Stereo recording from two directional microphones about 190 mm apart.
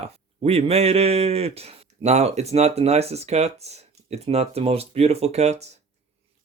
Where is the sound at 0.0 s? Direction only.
30° right (ahead or behind).